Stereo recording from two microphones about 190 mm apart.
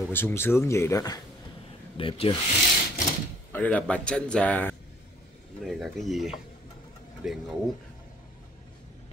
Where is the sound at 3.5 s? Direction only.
10° left (ahead or behind).